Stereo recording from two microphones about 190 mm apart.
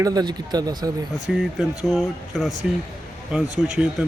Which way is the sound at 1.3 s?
Centre (ahead or behind).